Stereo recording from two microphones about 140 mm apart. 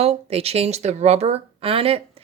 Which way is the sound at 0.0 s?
45° right (ahead or behind).